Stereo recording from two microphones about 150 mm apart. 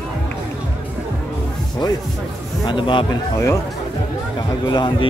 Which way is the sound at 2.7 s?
30° left (ahead or behind).